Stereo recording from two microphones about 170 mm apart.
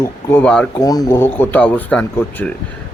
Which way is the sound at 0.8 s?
20° left (ahead or behind).